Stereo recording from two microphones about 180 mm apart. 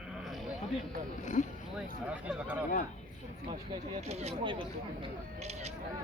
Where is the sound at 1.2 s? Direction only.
40° left (ahead or behind).